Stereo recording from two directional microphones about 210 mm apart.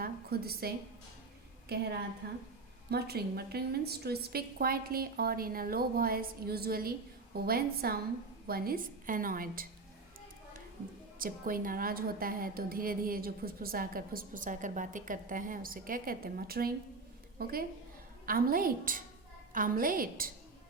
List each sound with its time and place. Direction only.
0.0 s a sound: 50° right (ahead or behind)
1.7 s a woman's voice: 50° right (ahead or behind)
2.9 s a woman's voice: 50° right (ahead or behind)
11.2 s a woman's voice: 40° right (ahead or behind)